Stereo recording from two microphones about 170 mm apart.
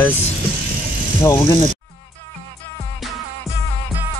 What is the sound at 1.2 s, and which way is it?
Speech, 15° left (ahead or behind).